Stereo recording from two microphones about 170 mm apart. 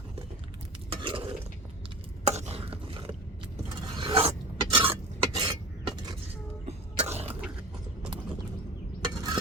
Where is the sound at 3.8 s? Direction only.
25° right (ahead or behind).